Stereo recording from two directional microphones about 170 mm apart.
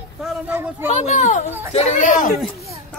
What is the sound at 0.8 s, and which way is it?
Speech, 45° left (ahead or behind).